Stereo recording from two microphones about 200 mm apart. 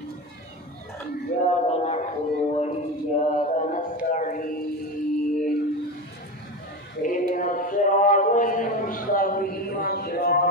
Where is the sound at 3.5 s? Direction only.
40° left (ahead or behind).